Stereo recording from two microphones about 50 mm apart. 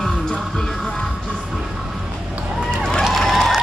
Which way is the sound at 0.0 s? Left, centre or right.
Centre.